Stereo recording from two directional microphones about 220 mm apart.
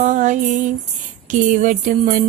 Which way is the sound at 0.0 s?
35° right (ahead or behind).